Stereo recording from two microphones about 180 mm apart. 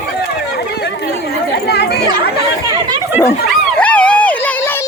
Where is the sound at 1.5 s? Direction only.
65° left (ahead or behind).